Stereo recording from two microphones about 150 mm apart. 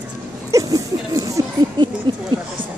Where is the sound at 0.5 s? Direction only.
20° right (ahead or behind).